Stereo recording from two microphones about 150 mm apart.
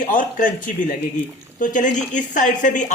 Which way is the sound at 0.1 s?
60° left (ahead or behind).